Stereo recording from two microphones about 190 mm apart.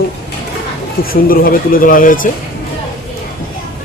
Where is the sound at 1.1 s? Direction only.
50° left (ahead or behind).